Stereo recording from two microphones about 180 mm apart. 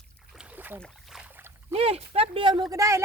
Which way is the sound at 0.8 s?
5° right (ahead or behind).